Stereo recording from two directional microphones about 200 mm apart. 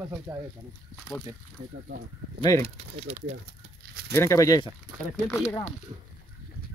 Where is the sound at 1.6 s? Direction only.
35° right (ahead or behind).